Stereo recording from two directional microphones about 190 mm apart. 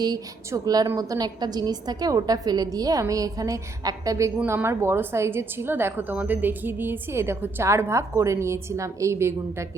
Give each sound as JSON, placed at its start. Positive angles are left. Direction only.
{"t": 0.0, "sound": "a woman's voice", "side_deg": -20}